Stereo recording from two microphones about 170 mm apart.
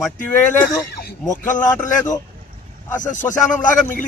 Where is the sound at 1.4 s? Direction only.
50° left (ahead or behind).